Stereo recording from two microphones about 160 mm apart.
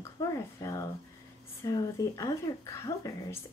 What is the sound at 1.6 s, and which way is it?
Speech, 20° left (ahead or behind).